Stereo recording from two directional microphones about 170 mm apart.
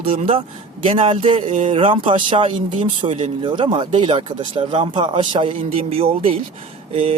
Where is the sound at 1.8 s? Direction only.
30° right (ahead or behind).